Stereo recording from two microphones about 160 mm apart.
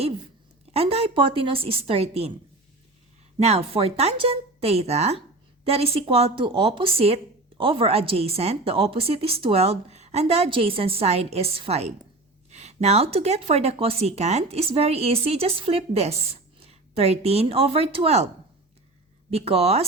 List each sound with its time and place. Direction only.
0.7 s speech: 40° right (ahead or behind)
3.4 s speech: 40° right (ahead or behind)
19.3 s speech: 40° right (ahead or behind)